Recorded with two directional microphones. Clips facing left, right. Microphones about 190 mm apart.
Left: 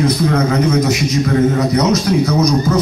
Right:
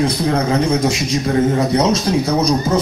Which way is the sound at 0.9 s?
30° right (ahead or behind).